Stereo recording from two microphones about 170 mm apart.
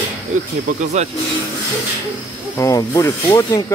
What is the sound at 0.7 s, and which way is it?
Speech, 45° right (ahead or behind).